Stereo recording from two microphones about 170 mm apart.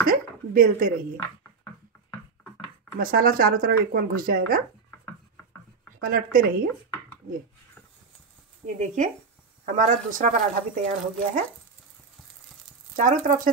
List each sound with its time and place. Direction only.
0.1 s speech: 60° right (ahead or behind)
3.0 s speech: 60° right (ahead or behind)
5.9 s speech: 60° right (ahead or behind)
8.6 s speech: 50° right (ahead or behind)
13.1 s speech: 45° right (ahead or behind)